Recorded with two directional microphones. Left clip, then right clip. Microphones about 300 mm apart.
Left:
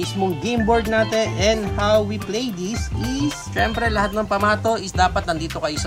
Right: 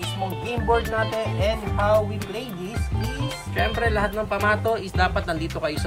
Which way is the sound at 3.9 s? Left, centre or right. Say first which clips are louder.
Left 4 dB; centre.